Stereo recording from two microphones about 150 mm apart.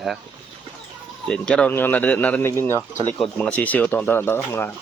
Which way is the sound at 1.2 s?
5° left (ahead or behind).